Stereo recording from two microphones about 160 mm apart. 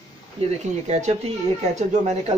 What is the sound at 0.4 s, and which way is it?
Speech, 40° right (ahead or behind).